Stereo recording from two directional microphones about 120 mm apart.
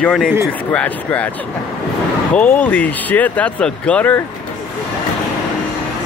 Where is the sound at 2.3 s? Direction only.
15° left (ahead or behind).